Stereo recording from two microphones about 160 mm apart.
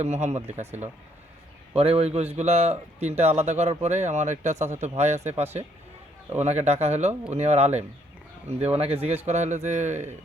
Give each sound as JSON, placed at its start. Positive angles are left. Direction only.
{"t": 0.0, "sound": "a man's voice", "side_deg": -45}